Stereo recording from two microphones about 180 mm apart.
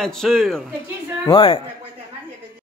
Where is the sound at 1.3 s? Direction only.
30° left (ahead or behind).